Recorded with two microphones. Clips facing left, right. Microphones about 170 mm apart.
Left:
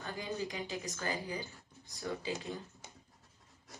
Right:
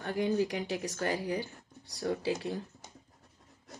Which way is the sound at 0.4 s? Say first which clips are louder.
Right 8 dB; 70° right (ahead or behind).